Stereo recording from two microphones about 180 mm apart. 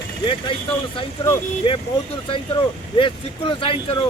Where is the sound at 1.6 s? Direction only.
30° left (ahead or behind).